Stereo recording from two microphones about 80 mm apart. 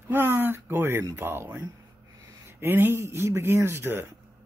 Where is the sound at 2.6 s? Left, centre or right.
Right.